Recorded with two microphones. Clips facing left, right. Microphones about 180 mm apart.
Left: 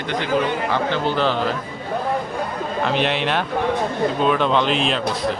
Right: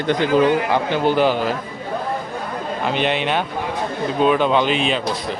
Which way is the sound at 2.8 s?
Centre (ahead or behind).